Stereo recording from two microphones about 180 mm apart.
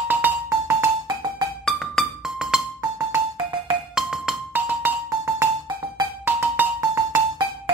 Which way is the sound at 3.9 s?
Centre (ahead or behind).